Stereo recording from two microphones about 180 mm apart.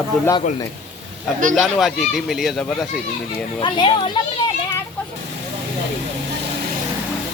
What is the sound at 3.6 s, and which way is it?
Speech, 25° left (ahead or behind).